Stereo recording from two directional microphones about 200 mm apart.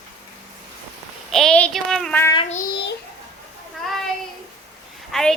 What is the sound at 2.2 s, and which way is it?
Child singing, 20° left (ahead or behind).